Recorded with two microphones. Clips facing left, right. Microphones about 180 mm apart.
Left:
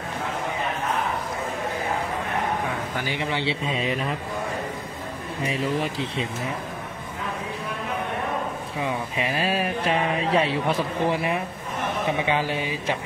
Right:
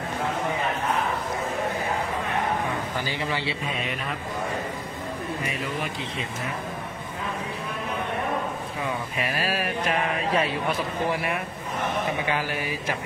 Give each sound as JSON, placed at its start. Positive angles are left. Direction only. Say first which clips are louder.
{"t": 3.1, "sound": "mantra", "louder": "left 6 dB", "side_deg": 20}
{"t": 5.5, "sound": "mantra", "louder": "left 5 dB", "side_deg": 30}
{"t": 9.3, "sound": "mantra", "louder": "left 3 dB", "side_deg": 25}
{"t": 12.3, "sound": "mantra", "louder": "left 3 dB", "side_deg": 25}